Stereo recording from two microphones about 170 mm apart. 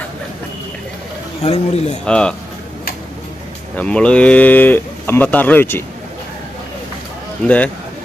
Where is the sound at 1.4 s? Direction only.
40° left (ahead or behind).